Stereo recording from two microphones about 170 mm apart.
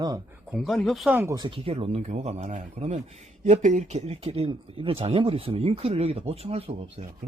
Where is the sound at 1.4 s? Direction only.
30° right (ahead or behind).